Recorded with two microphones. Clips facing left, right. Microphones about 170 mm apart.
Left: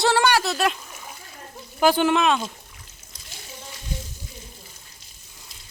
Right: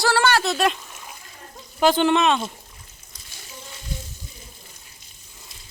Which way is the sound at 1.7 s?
10° left (ahead or behind).